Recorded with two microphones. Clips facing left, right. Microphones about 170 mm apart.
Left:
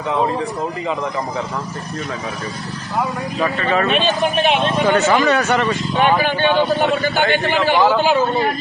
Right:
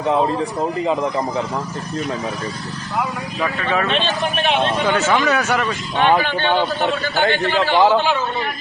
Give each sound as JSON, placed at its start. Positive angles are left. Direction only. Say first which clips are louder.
{"t": 3.4, "sound": "speech", "louder": "left 2 dB", "side_deg": 0}
{"t": 3.8, "sound": "a man's voice", "louder": "left 3 dB", "side_deg": 10}
{"t": 6.0, "sound": "a man's voice", "louder": "even", "side_deg": 15}
{"t": 8.2, "sound": "a man's voice", "louder": "left 6 dB", "side_deg": 40}